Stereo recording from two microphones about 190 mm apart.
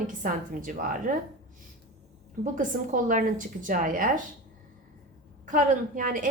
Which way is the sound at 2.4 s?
45° right (ahead or behind).